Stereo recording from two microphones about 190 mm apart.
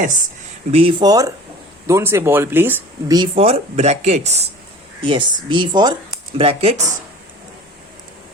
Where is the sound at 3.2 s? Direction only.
30° right (ahead or behind).